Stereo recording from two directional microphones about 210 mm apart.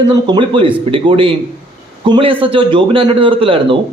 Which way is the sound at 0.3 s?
25° right (ahead or behind).